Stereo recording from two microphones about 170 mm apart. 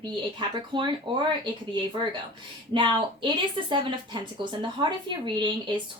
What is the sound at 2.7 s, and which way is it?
Speech, 30° right (ahead or behind).